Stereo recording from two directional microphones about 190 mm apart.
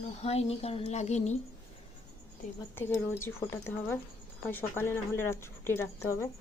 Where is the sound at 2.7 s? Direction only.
10° left (ahead or behind).